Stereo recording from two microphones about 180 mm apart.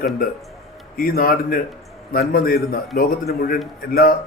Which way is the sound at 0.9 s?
55° left (ahead or behind).